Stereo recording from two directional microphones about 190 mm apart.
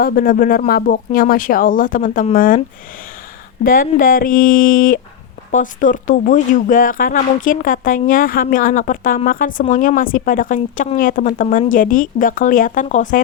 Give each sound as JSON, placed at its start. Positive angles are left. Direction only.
{"t": 0.0, "sound": "speech", "side_deg": 50}
{"t": 3.6, "sound": "speech", "side_deg": 45}